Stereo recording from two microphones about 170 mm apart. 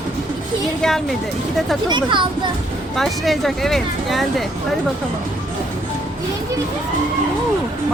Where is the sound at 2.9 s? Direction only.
Centre (ahead or behind).